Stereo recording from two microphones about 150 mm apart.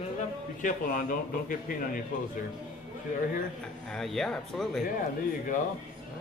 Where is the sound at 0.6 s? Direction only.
60° left (ahead or behind).